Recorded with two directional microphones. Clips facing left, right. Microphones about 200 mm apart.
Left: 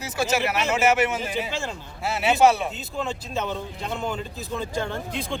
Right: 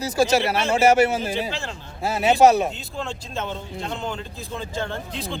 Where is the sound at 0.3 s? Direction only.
35° right (ahead or behind).